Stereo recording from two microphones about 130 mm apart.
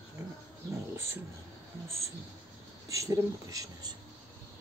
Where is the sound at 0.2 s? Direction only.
25° right (ahead or behind).